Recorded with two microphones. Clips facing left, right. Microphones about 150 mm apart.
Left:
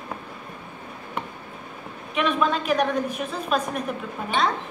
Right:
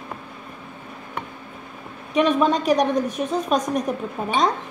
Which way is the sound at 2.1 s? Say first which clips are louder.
Right 5 dB; 40° right (ahead or behind).